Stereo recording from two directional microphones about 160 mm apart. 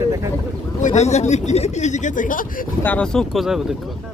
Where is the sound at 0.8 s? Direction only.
45° left (ahead or behind).